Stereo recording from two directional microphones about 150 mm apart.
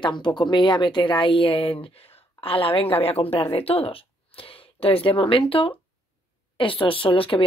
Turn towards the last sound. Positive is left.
turn(degrees=35)  # may be behind; listen again after turning